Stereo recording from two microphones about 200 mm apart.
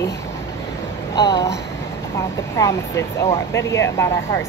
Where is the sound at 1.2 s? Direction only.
20° left (ahead or behind).